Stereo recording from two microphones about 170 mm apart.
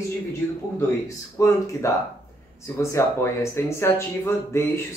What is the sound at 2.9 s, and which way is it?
Speech, 15° left (ahead or behind).